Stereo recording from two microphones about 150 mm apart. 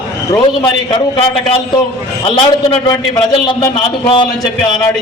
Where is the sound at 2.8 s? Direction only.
25° left (ahead or behind).